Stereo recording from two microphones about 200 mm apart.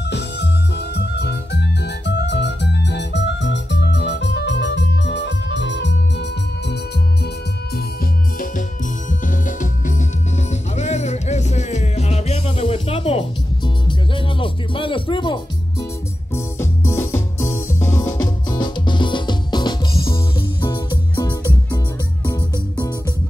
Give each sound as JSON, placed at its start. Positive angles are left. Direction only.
{"t": 0.1, "sound": "music", "side_deg": 55}
{"t": 2.0, "sound": "organ", "side_deg": 60}
{"t": 10.8, "sound": "music", "side_deg": 35}
{"t": 16.3, "sound": "music", "side_deg": 15}